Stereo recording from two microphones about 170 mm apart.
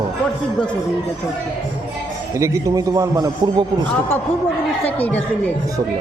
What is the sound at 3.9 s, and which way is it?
Speech, 15° left (ahead or behind).